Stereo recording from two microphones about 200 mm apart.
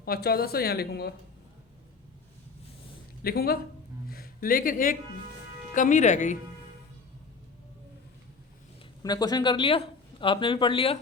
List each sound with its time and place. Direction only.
0.0 s speech: 50° left (ahead or behind)
3.2 s speech: 50° left (ahead or behind)
9.0 s speech: 20° left (ahead or behind)